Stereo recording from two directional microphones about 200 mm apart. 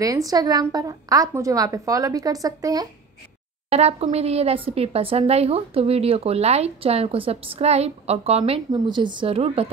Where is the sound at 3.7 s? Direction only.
30° right (ahead or behind).